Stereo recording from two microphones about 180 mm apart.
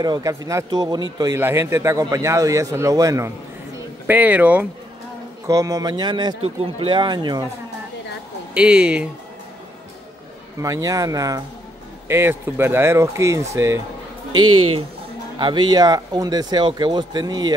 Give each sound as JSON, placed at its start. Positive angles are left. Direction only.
{"t": 0.0, "sound": "a man's voice", "side_deg": -20}
{"t": 5.5, "sound": "speech", "side_deg": -20}
{"t": 8.5, "sound": "speech", "side_deg": -5}
{"t": 10.6, "sound": "a man's voice", "side_deg": -20}
{"t": 15.3, "sound": "speech", "side_deg": -25}